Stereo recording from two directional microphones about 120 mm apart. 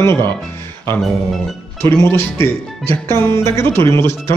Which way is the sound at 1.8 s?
20° left (ahead or behind).